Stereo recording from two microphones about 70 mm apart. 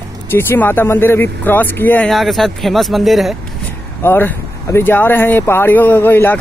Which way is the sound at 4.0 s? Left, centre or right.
Left.